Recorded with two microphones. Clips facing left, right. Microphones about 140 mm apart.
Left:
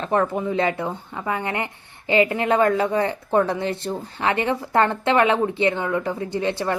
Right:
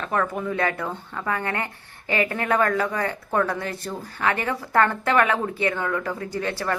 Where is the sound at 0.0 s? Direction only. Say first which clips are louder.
Left 4 dB; 25° left (ahead or behind).